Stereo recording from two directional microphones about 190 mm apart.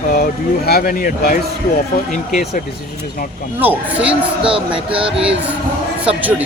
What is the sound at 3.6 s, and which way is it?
Speech, 10° right (ahead or behind).